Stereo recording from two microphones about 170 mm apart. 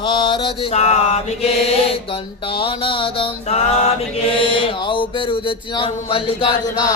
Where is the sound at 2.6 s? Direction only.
30° left (ahead or behind).